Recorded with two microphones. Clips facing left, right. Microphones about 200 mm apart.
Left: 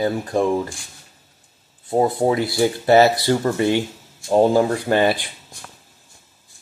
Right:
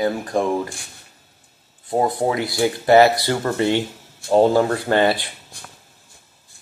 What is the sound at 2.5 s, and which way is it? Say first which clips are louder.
Speech: right 2 dB; 20° left (ahead or behind).